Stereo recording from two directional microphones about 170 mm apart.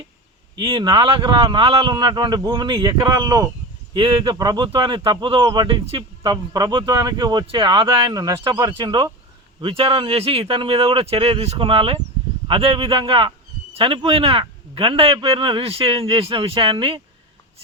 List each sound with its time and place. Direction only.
0.5 s a man's voice: 30° right (ahead or behind)